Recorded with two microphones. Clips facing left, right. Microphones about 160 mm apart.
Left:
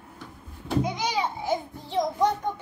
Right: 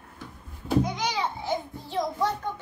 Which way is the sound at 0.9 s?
10° left (ahead or behind).